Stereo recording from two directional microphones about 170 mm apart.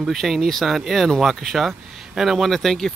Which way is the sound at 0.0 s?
Centre (ahead or behind).